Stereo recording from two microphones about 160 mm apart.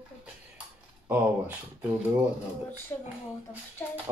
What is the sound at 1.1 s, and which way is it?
Speech, 10° right (ahead or behind).